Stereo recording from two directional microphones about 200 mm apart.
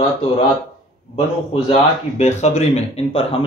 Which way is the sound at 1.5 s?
30° left (ahead or behind).